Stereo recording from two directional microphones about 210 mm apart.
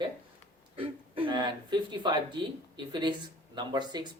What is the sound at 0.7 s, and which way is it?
Speech, 25° right (ahead or behind).